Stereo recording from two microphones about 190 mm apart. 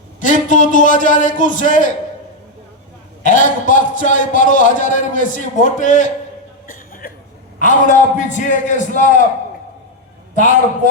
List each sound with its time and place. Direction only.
0.2 s a man's voice: 45° left (ahead or behind)
3.2 s a man's voice: 45° left (ahead or behind)
6.7 s cough: 50° left (ahead or behind)
7.6 s a man's voice: 40° left (ahead or behind)